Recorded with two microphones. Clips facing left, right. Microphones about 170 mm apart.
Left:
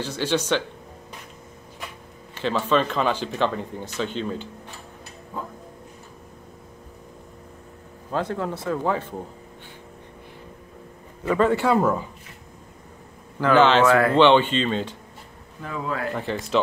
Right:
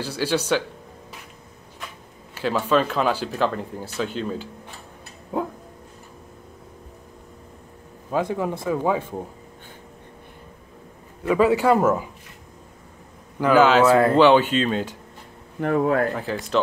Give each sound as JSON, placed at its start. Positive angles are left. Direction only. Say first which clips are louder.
{"t": 0.0, "sound": "speech", "louder": "right 1 dB", "side_deg": -10}
{"t": 2.3, "sound": "speech", "louder": "right 1 dB", "side_deg": -5}
{"t": 8.1, "sound": "speech", "louder": "right 3 dB", "side_deg": -10}
{"t": 11.2, "sound": "speech", "louder": "right 2 dB", "side_deg": -5}
{"t": 13.4, "sound": "speech", "louder": "right 1 dB", "side_deg": -5}
{"t": 13.8, "sound": "speech", "louder": "right 2 dB", "side_deg": -20}
{"t": 14.1, "sound": "speech", "louder": "right 1 dB", "side_deg": -5}
{"t": 15.6, "sound": "speech", "louder": "right 9 dB", "side_deg": -60}
{"t": 16.2, "sound": "speech", "louder": "even", "side_deg": 0}